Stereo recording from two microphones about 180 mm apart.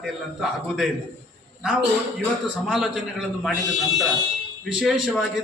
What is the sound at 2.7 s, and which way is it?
Speech, centre (ahead or behind).